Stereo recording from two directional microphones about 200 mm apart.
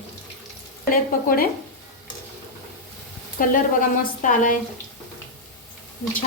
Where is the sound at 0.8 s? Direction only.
45° left (ahead or behind).